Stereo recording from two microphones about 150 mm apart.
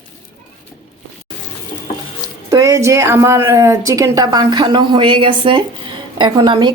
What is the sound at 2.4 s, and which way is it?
A woman's voice, 20° right (ahead or behind).